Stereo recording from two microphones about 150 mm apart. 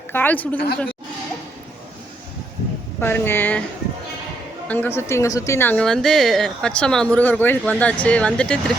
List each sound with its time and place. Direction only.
0.1 s speech: 10° left (ahead or behind)
0.5 s a woman's voice: 90° left
3.0 s speech: 15° left (ahead or behind)
4.7 s speech: 15° left (ahead or behind)